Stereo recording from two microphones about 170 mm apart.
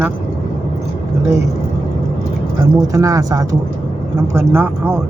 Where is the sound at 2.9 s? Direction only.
20° right (ahead or behind).